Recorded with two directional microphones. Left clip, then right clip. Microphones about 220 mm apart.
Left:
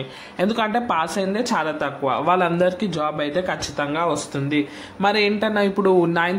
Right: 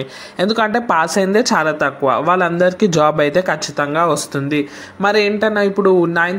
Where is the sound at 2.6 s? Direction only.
25° right (ahead or behind).